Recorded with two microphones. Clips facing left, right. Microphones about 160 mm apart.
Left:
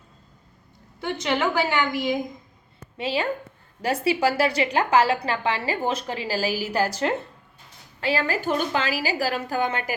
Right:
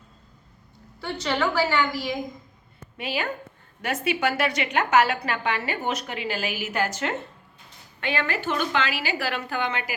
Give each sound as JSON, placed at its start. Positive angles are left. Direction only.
{"t": 1.0, "sound": "a woman's voice", "side_deg": 20}
{"t": 3.0, "sound": "a woman's voice", "side_deg": 30}